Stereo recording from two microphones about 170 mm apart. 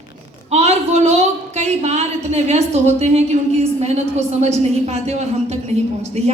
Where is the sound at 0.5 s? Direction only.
40° right (ahead or behind).